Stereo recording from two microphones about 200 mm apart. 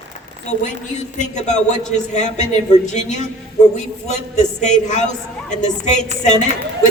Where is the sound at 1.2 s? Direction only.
35° left (ahead or behind).